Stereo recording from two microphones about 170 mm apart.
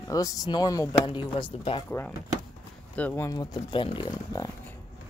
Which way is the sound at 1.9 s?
10° left (ahead or behind).